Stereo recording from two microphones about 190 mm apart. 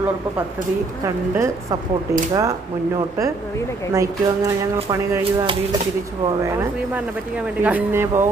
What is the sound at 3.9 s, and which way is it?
Speech, 15° right (ahead or behind).